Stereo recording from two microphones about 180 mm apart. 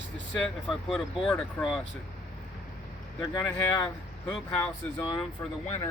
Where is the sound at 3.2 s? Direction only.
20° left (ahead or behind).